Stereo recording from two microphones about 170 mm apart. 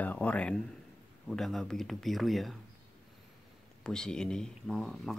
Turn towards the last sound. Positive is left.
turn(degrees=0)  # may be behind; listen again after turning